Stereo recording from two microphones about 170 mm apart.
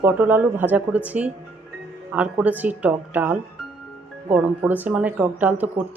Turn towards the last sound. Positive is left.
turn(degrees=-10)  # may be behind; listen again after turning